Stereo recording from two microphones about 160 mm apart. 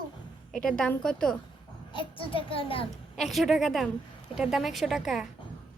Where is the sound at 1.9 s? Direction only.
30° left (ahead or behind).